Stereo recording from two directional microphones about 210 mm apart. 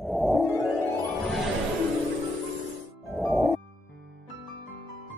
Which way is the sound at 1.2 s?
Centre (ahead or behind).